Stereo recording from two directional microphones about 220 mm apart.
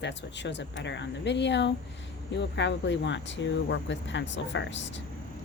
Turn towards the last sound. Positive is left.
turn(degrees=55)  # may be behind; listen again after turning